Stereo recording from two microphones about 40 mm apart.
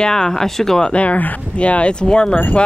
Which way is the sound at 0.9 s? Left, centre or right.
Left.